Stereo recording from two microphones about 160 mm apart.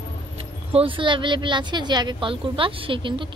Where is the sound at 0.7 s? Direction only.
35° right (ahead or behind).